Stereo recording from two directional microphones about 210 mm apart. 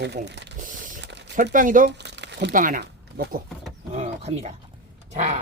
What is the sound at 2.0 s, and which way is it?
Crumpling, 55° right (ahead or behind).